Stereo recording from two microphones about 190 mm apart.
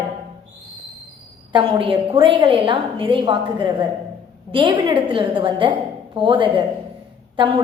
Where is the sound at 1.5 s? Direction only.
30° right (ahead or behind).